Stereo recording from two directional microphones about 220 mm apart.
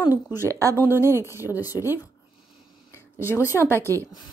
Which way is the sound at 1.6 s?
15° left (ahead or behind).